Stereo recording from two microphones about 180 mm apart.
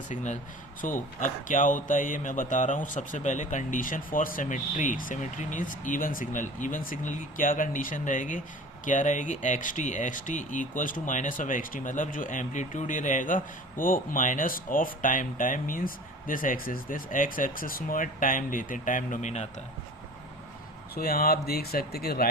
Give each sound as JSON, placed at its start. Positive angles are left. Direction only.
{"t": 0.8, "sound": "speech", "side_deg": 45}
{"t": 20.9, "sound": "speech", "side_deg": 55}